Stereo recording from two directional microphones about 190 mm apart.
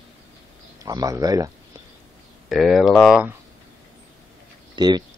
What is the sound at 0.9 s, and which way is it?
Speech, 20° right (ahead or behind).